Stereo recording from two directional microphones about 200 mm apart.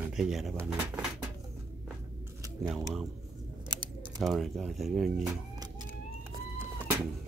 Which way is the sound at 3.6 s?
20° right (ahead or behind).